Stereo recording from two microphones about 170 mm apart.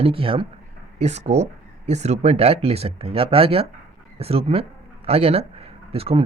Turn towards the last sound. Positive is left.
turn(degrees=-35)  # may be behind; listen again after turning